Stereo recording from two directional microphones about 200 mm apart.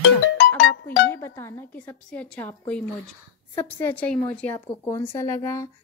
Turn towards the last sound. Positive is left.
turn(degrees=15)  # may be behind; listen again after turning